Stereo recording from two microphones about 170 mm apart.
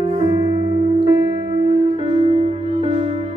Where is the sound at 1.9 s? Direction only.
35° right (ahead or behind).